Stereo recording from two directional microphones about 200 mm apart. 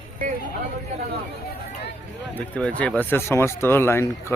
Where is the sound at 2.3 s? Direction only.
5° left (ahead or behind).